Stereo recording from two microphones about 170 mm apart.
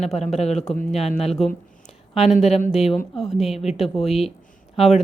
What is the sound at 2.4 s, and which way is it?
Speech, 40° left (ahead or behind).